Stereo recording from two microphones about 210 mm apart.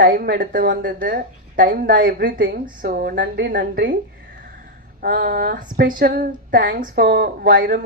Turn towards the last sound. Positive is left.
turn(degrees=-45)  # may be behind; listen again after turning